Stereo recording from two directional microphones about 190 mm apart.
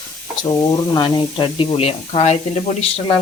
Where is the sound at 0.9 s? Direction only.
20° left (ahead or behind).